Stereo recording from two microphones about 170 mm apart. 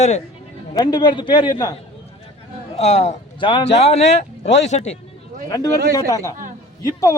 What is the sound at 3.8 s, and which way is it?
A man's voice, 40° left (ahead or behind).